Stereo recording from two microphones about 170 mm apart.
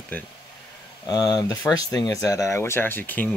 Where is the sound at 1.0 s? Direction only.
25° left (ahead or behind).